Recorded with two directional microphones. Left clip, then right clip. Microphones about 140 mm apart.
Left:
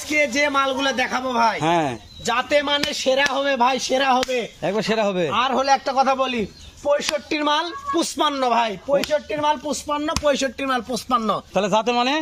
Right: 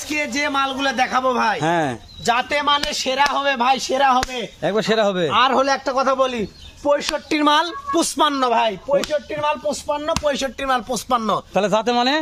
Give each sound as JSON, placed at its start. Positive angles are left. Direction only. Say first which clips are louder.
{"t": 0.1, "sound": "a man's voice", "louder": "left 2 dB", "side_deg": -10}
{"t": 2.2, "sound": "speech", "louder": "right 2 dB", "side_deg": -30}
{"t": 2.9, "sound": "speech", "louder": "right 1 dB", "side_deg": -45}
{"t": 4.6, "sound": "speech", "louder": "right 5 dB", "side_deg": -20}
{"t": 5.3, "sound": "speech", "louder": "right 2 dB", "side_deg": -60}
{"t": 6.8, "sound": "speech", "louder": "right 2 dB", "side_deg": -30}
{"t": 7.3, "sound": "speech", "louder": "right 7 dB", "side_deg": -50}
{"t": 8.2, "sound": "speech", "louder": "right 3 dB", "side_deg": -20}
{"t": 8.4, "sound": "speech", "louder": "right 1 dB", "side_deg": -5}
{"t": 9.3, "sound": "a man's voice", "louder": "even", "side_deg": -20}
{"t": 11.5, "sound": "speech", "louder": "right 1 dB", "side_deg": -20}